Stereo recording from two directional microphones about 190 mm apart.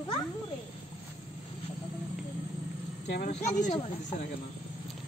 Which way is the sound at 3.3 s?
40° left (ahead or behind).